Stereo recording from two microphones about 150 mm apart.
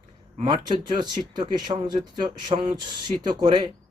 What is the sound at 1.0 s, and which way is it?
Speech, 30° right (ahead or behind).